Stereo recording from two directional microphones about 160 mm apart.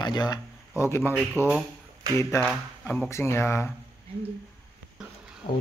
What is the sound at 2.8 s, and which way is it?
Speech, 15° left (ahead or behind).